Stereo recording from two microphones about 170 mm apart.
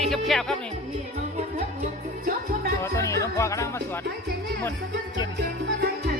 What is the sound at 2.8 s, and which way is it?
Speech, 15° left (ahead or behind).